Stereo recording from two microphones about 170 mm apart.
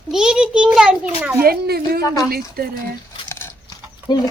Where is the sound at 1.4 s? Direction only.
65° right (ahead or behind).